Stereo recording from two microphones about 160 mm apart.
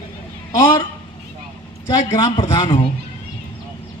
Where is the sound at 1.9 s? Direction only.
25° left (ahead or behind).